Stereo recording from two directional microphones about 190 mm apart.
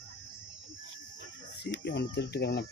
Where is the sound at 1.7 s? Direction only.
60° left (ahead or behind).